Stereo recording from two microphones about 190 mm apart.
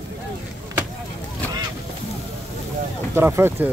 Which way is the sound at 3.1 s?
10° right (ahead or behind).